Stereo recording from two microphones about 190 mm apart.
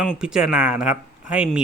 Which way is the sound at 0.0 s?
Centre (ahead or behind).